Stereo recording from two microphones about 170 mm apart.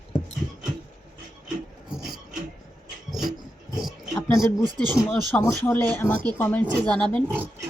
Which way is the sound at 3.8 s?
Centre (ahead or behind).